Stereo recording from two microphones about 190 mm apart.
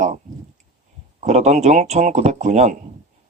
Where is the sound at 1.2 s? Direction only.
35° right (ahead or behind).